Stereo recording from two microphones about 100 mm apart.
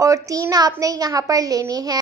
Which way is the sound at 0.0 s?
35° right (ahead or behind).